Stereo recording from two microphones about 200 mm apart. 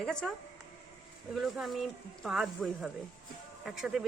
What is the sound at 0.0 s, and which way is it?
Speech, 5° left (ahead or behind).